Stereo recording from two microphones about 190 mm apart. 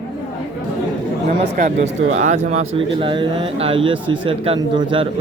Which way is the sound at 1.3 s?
45° right (ahead or behind).